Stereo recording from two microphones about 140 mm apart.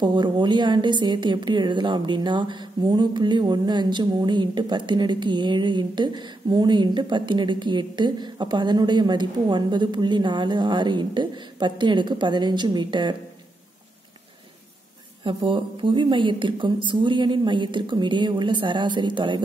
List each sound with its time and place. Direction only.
0.0 s a woman's voice: 35° right (ahead or behind)
15.2 s a woman's voice: 35° right (ahead or behind)